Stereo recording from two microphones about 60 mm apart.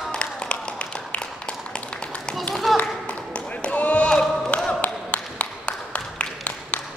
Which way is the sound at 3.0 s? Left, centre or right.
Centre.